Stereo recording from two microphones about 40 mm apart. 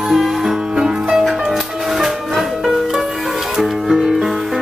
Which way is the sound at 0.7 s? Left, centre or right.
Centre.